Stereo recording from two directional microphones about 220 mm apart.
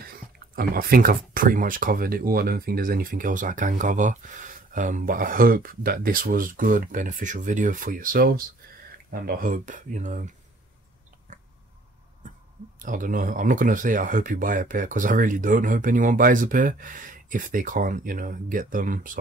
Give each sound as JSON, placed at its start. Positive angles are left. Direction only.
{"t": 0.0, "sound": "speech", "side_deg": -45}
{"t": 12.7, "sound": "speech", "side_deg": -35}